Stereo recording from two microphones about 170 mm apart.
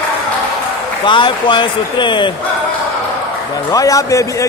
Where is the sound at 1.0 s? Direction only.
30° left (ahead or behind).